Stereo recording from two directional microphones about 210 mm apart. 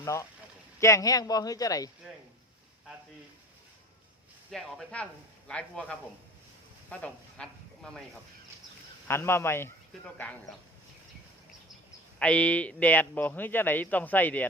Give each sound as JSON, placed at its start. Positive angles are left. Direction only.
{"t": 0.0, "sound": "speech", "side_deg": 15}
{"t": 4.5, "sound": "speech", "side_deg": 0}
{"t": 9.0, "sound": "speech", "side_deg": 10}
{"t": 12.2, "sound": "speech", "side_deg": 5}